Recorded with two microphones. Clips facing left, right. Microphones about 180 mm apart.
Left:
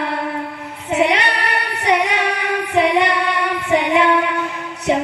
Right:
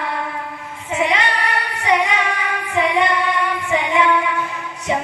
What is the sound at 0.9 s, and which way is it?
Child singing, 65° left (ahead or behind).